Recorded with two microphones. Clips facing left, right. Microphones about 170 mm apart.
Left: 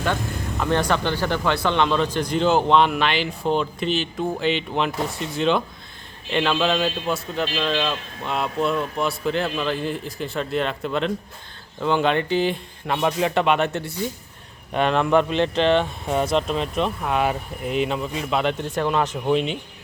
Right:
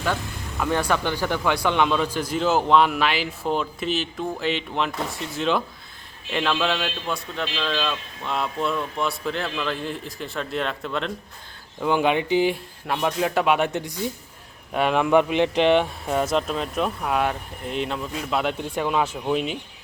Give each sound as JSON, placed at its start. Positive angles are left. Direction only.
{"t": 0.6, "sound": "speech", "side_deg": -10}
{"t": 11.8, "sound": "speech", "side_deg": -10}
{"t": 12.9, "sound": "speech", "side_deg": 0}
{"t": 16.3, "sound": "speech", "side_deg": 0}